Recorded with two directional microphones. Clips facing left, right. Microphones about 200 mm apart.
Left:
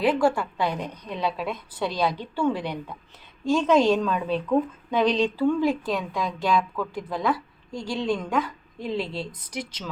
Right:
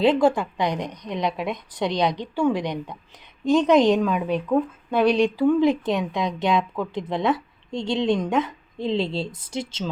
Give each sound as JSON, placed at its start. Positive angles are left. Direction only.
{"t": 0.0, "sound": "a woman's voice", "side_deg": -20}